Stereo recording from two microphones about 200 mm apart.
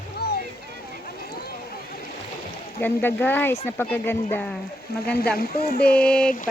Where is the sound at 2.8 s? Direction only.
10° left (ahead or behind).